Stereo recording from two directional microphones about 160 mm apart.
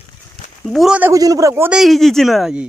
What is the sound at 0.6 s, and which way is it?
Speech, centre (ahead or behind).